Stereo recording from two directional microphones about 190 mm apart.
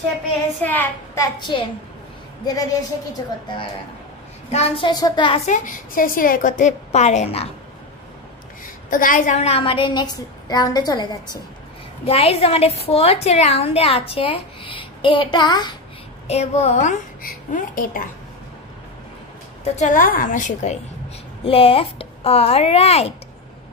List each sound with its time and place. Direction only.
0.6 s a child's voice: 10° left (ahead or behind)
5.5 s a woman's voice: 45° left (ahead or behind)
8.9 s a woman's voice: 45° left (ahead or behind); by 11.1 s 20° left (ahead or behind)
12.1 s a woman's voice: 30° left (ahead or behind)
16.3 s a woman's voice: 35° left (ahead or behind)
19.6 s a woman's voice: 35° left (ahead or behind)
21.5 s a woman's voice: 30° left (ahead or behind)